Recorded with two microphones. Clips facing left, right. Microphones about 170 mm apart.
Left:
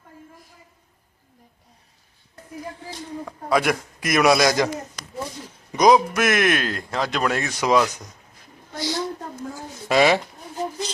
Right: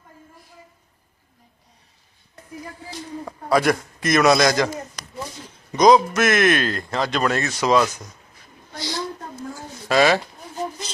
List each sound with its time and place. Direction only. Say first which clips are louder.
3.5 s speech: right 2 dB; 5° left (ahead or behind)
8.9 s a sound: left 2 dB; 20° left (ahead or behind)
9.9 s speech: even; 20° left (ahead or behind)